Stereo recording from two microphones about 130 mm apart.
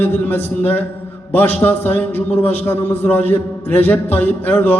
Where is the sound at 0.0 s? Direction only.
15° left (ahead or behind).